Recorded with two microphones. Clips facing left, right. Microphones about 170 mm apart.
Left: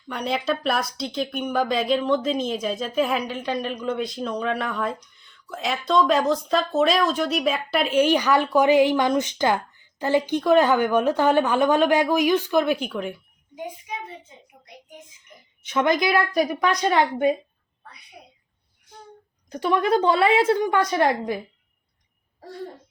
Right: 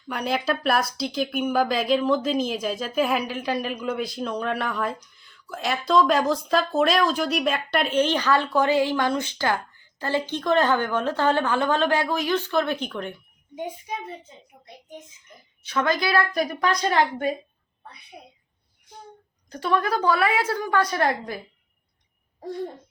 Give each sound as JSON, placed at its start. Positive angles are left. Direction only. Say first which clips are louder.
{"t": 0.1, "sound": "speech", "louder": "even", "side_deg": -5}
{"t": 15.6, "sound": "a woman's voice", "louder": "left 3 dB", "side_deg": 20}
{"t": 19.5, "sound": "a woman's voice", "louder": "left 3 dB", "side_deg": 15}